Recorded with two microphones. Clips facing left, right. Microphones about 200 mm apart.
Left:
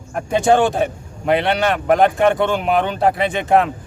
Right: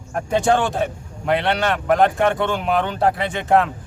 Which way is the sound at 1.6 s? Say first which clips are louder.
Left 2 dB; 15° left (ahead or behind).